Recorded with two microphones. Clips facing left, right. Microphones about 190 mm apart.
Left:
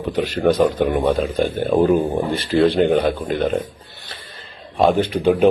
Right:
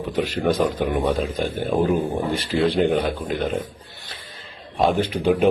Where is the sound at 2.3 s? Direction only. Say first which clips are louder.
Left 5 dB; 10° right (ahead or behind).